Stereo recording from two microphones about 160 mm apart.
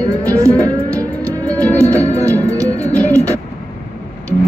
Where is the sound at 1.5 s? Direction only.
20° right (ahead or behind).